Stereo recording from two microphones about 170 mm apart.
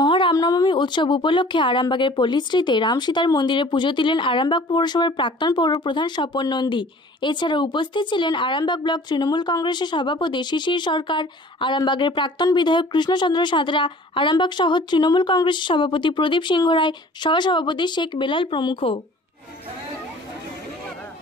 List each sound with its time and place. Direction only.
0.0 s speech: 30° left (ahead or behind)